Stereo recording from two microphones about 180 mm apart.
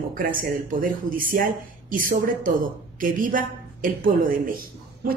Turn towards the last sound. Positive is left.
turn(degrees=-55)  # may be behind; listen again after turning